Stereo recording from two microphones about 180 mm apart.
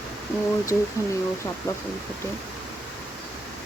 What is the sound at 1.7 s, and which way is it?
Speech, 20° left (ahead or behind).